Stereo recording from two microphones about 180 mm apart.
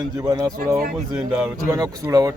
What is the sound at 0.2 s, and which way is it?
A man's voice, 20° right (ahead or behind).